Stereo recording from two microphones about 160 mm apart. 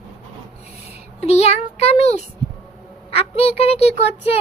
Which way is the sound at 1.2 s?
40° left (ahead or behind).